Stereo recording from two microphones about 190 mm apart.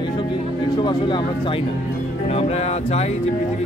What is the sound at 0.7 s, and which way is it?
Speech, 25° left (ahead or behind).